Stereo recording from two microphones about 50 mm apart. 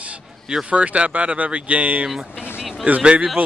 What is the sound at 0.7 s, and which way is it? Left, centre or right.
Speech, right.